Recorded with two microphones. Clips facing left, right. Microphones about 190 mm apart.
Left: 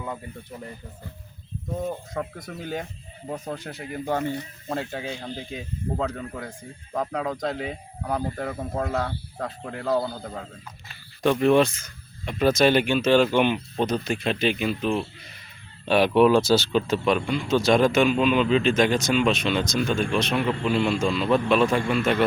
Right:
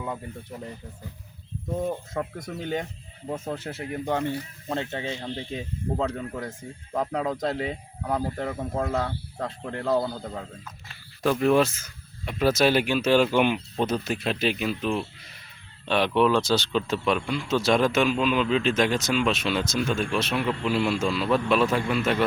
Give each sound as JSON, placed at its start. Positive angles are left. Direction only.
{"t": 3.3, "sound": "speech", "side_deg": 0}
{"t": 10.0, "sound": "a man's voice", "side_deg": -15}
{"t": 11.2, "sound": "speech", "side_deg": 0}